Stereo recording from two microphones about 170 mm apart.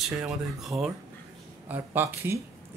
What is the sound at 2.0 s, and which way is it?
Speech, 15° right (ahead or behind).